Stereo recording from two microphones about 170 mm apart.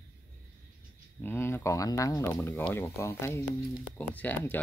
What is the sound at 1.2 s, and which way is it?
Speech, 15° left (ahead or behind).